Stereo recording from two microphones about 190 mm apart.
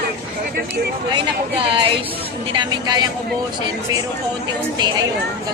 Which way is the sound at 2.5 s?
25° right (ahead or behind).